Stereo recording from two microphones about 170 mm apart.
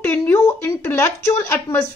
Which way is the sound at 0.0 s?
10° left (ahead or behind).